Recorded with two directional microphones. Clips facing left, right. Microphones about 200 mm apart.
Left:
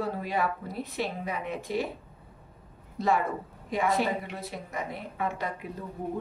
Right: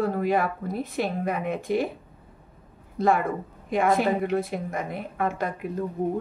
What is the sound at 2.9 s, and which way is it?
A woman's voice, 50° right (ahead or behind).